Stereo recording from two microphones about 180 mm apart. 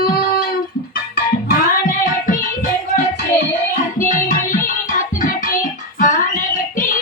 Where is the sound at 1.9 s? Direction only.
50° left (ahead or behind).